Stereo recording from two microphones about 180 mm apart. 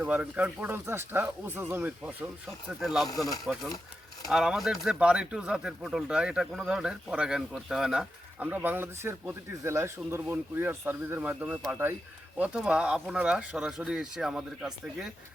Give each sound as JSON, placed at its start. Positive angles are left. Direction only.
{"t": 0.0, "sound": "speech", "side_deg": -10}
{"t": 3.1, "sound": "speech", "side_deg": 20}
{"t": 3.4, "sound": "speech", "side_deg": 0}